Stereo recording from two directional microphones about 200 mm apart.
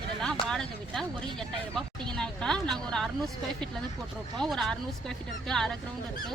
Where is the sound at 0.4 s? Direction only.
Centre (ahead or behind).